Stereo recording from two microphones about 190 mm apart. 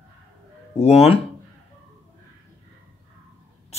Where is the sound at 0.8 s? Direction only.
35° left (ahead or behind).